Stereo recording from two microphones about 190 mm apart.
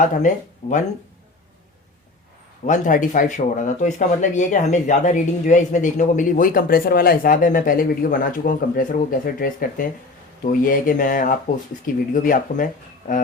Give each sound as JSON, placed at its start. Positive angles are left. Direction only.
{"t": 0.0, "sound": "speech", "side_deg": 40}
{"t": 2.6, "sound": "speech", "side_deg": 40}